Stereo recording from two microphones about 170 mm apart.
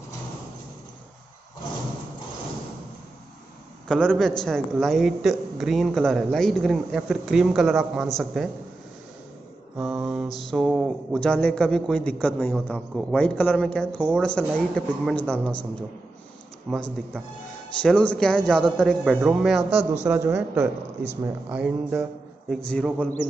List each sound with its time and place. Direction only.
3.9 s a man's voice: 5° left (ahead or behind)
9.8 s a man's voice: centre (ahead or behind)
16.7 s a man's voice: centre (ahead or behind)
17.8 s a man's voice: 5° left (ahead or behind)
19.7 s a man's voice: 40° right (ahead or behind)
20.1 s speech: 10° right (ahead or behind)
22.7 s a man's voice: 5° left (ahead or behind)